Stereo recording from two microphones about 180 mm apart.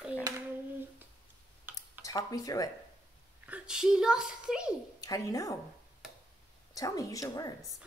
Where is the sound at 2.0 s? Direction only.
20° left (ahead or behind).